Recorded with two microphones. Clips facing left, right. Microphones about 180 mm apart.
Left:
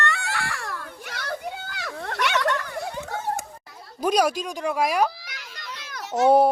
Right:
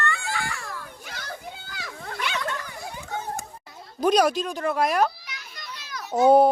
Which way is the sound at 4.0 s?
10° left (ahead or behind).